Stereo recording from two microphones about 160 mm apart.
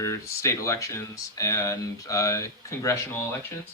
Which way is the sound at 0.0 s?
20° left (ahead or behind).